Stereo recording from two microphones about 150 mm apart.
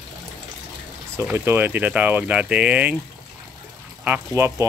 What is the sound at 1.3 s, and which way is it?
Speech, 15° right (ahead or behind).